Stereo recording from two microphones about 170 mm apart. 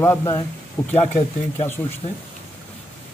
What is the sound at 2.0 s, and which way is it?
Speech, 30° left (ahead or behind).